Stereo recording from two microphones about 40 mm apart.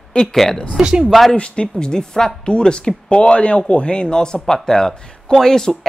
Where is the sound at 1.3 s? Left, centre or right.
Left.